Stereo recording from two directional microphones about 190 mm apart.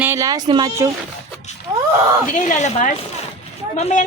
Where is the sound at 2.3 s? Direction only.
40° left (ahead or behind).